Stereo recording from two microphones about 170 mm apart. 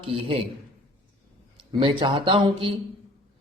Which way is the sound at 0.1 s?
35° right (ahead or behind).